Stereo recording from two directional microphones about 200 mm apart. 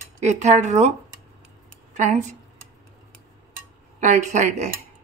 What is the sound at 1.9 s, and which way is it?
Speech, 35° right (ahead or behind).